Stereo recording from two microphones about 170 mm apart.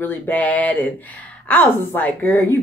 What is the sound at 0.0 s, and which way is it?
Speech, 10° left (ahead or behind).